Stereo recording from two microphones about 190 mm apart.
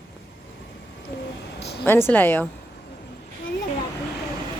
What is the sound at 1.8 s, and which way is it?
Speech, 10° left (ahead or behind).